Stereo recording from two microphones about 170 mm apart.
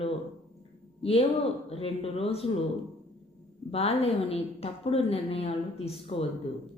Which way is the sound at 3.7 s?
35° left (ahead or behind).